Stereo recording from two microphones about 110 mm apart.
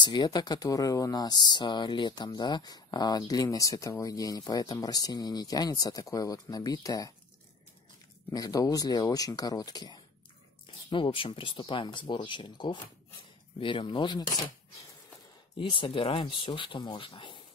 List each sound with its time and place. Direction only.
0.0 s speech: 40° left (ahead or behind)
8.3 s speech: 35° left (ahead or behind)
10.9 s speech: 55° left (ahead or behind)
15.5 s speech: 50° left (ahead or behind)